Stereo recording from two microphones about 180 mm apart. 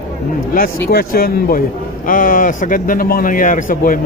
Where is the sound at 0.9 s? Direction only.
55° left (ahead or behind).